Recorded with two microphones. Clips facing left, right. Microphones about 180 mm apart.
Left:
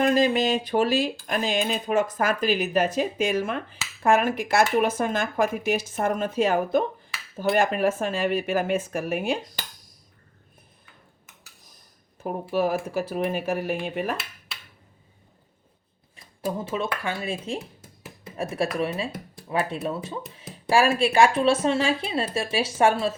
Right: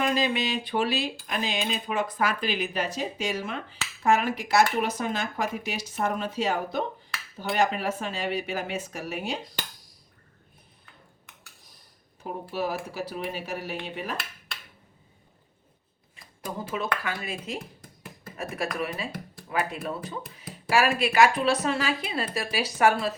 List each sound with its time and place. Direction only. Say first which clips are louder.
0.0 s speech: left 6 dB; 45° left (ahead or behind)
12.2 s speech: left 6 dB; 50° left (ahead or behind)
14.2 s dishes: even; centre (ahead or behind)
17.0 s speech: left 4 dB; 25° left (ahead or behind)